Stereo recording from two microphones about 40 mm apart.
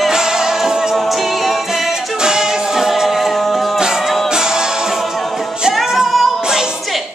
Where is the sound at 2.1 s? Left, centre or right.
Centre.